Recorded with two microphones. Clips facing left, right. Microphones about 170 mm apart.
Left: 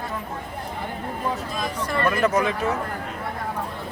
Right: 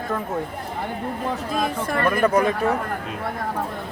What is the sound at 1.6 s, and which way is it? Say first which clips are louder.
Speech: right 4 dB; 55° right (ahead or behind).